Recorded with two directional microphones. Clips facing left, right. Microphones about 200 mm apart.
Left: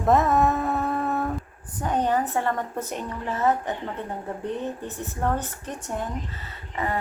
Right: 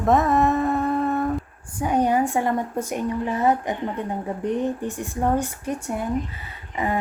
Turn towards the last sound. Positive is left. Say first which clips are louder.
# right 3 dB
turn(degrees=-15)  # may be behind; listen again after turning